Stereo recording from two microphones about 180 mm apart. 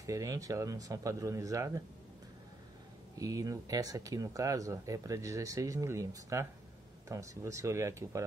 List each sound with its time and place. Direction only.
0.0 s speech: 20° right (ahead or behind)
3.2 s speech: 20° right (ahead or behind)